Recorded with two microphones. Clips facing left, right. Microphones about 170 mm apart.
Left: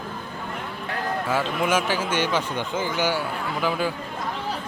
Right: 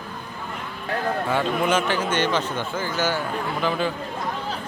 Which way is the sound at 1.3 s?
5° left (ahead or behind).